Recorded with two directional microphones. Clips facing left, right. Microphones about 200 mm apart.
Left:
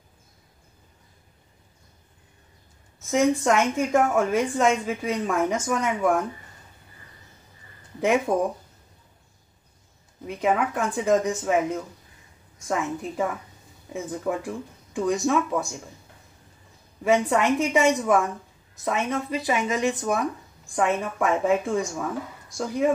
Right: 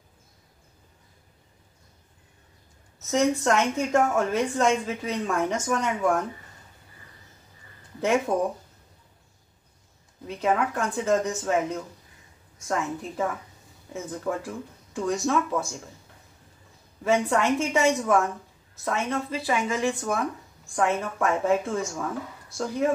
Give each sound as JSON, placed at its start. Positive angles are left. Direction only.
{"t": 3.1, "sound": "a woman's voice", "side_deg": 15}
{"t": 8.3, "sound": "a woman's voice", "side_deg": 15}
{"t": 10.2, "sound": "a woman's voice", "side_deg": 15}
{"t": 17.0, "sound": "a woman's voice", "side_deg": 15}